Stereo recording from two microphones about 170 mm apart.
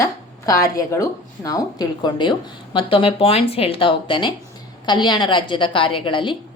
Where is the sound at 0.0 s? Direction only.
20° left (ahead or behind).